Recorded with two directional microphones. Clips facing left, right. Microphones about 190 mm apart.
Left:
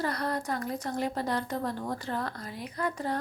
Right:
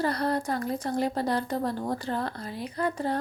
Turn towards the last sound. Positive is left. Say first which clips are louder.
# right 3 dB
turn(degrees=-30)  # may be behind; listen again after turning